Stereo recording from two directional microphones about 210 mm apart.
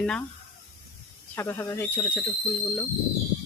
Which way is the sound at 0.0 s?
5° left (ahead or behind).